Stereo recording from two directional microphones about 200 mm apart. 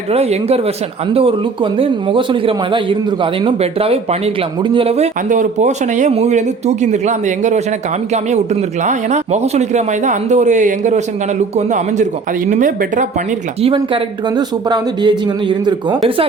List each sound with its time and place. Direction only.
0.1 s a man's voice: 30° right (ahead or behind)
8.8 s speech: 35° right (ahead or behind)
13.6 s a man's voice: 25° right (ahead or behind)